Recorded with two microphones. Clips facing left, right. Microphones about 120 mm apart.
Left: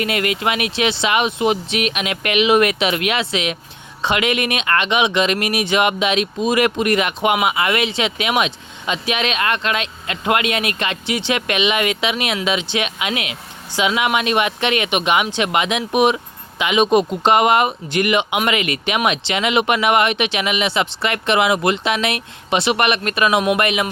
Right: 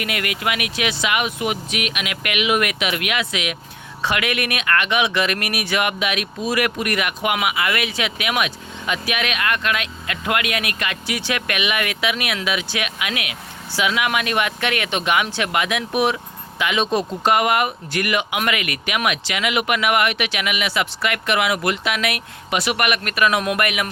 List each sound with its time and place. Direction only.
0.0 s speech: 25° left (ahead or behind)